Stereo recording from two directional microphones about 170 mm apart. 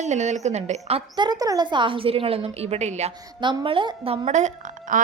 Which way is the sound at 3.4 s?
30° right (ahead or behind).